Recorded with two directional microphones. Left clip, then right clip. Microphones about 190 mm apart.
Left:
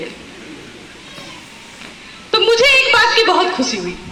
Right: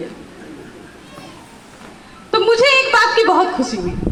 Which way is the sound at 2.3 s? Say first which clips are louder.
Left 1 dB; 65° right (ahead or behind).